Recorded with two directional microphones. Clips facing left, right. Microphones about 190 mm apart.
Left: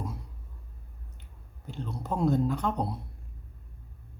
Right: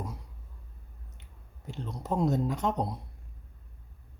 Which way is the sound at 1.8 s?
20° right (ahead or behind).